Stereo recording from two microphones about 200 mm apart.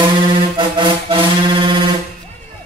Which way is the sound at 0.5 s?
25° right (ahead or behind).